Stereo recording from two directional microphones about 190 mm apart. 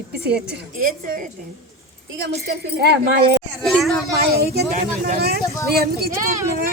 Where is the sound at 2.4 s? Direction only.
55° right (ahead or behind).